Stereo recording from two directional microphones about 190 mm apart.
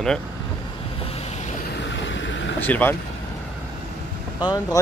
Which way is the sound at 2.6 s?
10° left (ahead or behind).